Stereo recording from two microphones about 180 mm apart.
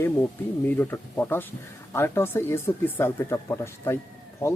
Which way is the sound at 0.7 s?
10° left (ahead or behind).